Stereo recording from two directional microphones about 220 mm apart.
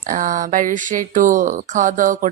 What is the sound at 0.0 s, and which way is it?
Speech, 35° right (ahead or behind).